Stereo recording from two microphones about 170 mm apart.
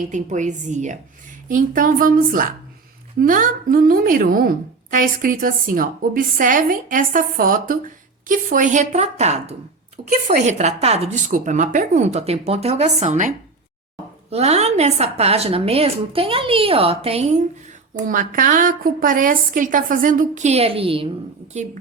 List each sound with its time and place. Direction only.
0.1 s a woman's voice: 45° right (ahead or behind)
18.0 s a woman's voice: 50° right (ahead or behind); by 21.6 s 35° right (ahead or behind)